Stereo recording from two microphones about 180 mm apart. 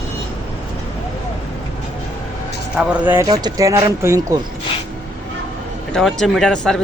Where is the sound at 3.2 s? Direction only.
20° right (ahead or behind).